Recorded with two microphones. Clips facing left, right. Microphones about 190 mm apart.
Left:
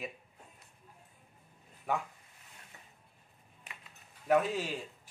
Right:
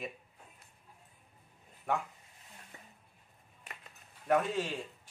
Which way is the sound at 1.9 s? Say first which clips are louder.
Even; 5° left (ahead or behind).